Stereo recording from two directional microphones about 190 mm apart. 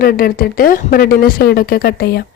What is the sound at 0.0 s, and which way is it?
Speech, 50° left (ahead or behind).